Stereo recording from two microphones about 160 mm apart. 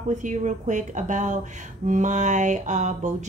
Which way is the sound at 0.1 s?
50° right (ahead or behind).